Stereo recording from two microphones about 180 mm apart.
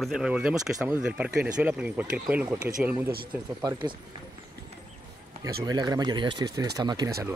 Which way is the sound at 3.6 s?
20° right (ahead or behind).